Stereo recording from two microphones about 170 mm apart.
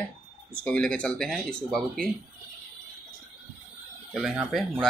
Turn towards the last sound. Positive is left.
turn(degrees=0)  # may be behind; listen again after turning